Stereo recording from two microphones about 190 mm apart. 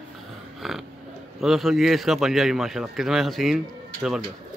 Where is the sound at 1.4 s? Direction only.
Centre (ahead or behind).